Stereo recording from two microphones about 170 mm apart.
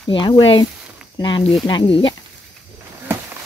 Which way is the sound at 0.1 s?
30° left (ahead or behind).